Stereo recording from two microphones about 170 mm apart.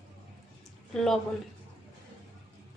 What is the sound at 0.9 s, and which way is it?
Speech, centre (ahead or behind).